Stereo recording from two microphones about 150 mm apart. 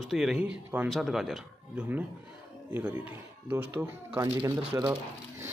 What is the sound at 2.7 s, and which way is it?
Speech, 15° right (ahead or behind).